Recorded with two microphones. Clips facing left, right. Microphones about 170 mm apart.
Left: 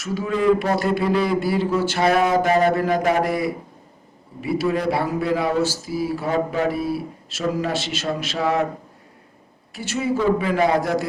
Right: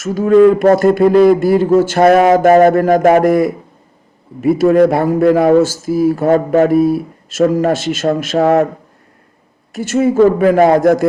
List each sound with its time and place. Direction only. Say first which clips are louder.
0.0 s a man's voice: right 12 dB; 45° right (ahead or behind)
9.7 s a man's voice: right 11 dB; 45° right (ahead or behind)